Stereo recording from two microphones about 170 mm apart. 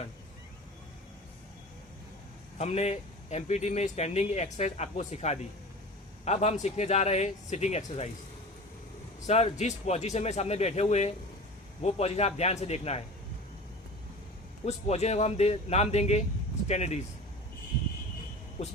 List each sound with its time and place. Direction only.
2.6 s a man's voice: 40° left (ahead or behind)
9.2 s a man's voice: 40° left (ahead or behind)
14.6 s a man's voice: 40° left (ahead or behind)